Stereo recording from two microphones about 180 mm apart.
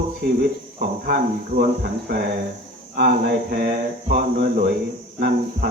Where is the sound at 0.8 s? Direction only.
55° right (ahead or behind).